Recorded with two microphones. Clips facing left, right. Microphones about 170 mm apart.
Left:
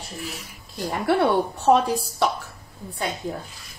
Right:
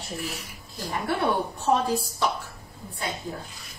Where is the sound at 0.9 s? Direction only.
75° left (ahead or behind).